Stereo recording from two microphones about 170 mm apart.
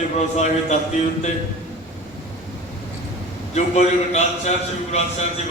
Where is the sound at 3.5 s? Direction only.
40° left (ahead or behind).